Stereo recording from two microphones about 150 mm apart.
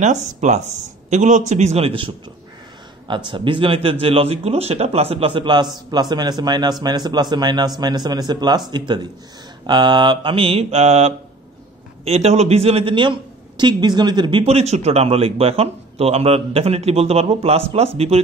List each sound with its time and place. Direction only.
0.0 s speech: 50° right (ahead or behind)
3.3 s a man's voice: 35° right (ahead or behind)